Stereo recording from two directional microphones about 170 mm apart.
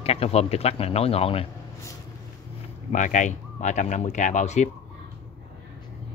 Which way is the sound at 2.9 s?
45° left (ahead or behind).